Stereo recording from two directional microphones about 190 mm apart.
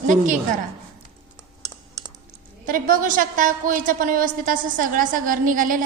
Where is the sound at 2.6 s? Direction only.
45° right (ahead or behind).